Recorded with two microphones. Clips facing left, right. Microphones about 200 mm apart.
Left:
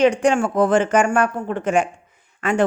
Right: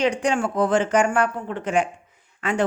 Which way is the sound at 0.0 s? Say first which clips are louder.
Left 5 dB; 50° left (ahead or behind).